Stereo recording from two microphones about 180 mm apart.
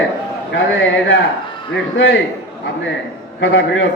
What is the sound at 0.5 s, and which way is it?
Speech, 90° left.